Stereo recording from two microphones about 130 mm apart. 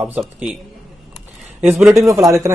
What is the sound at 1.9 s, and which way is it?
Speech, 25° right (ahead or behind).